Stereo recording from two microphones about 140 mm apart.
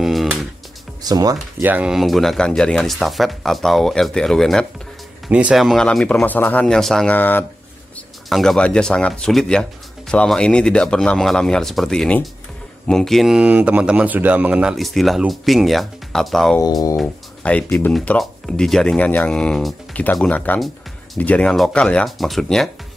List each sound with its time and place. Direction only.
0.0 s music: centre (ahead or behind)
1.0 s speech: 25° right (ahead or behind)
1.6 s speech: 10° right (ahead or behind)
7.2 s speech: 15° left (ahead or behind)
8.3 s speech: centre (ahead or behind)